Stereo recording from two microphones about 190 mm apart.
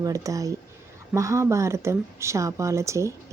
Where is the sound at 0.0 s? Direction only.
15° right (ahead or behind).